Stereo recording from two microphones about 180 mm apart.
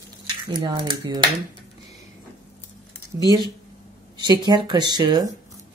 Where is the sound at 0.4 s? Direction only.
25° right (ahead or behind).